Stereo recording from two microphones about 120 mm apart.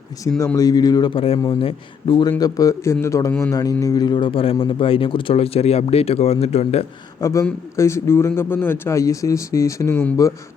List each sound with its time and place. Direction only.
0.5 s a man's voice: 30° left (ahead or behind)
1.1 s a man's voice: 50° left (ahead or behind)
1.6 s a man's voice: 40° left (ahead or behind)
2.4 s a man's voice: 30° left (ahead or behind); by 6.8 s 60° left (ahead or behind)
7.2 s speech: 25° left (ahead or behind)